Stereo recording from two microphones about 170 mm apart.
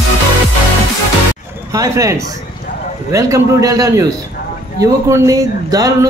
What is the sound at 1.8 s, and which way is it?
Speech, 20° right (ahead or behind).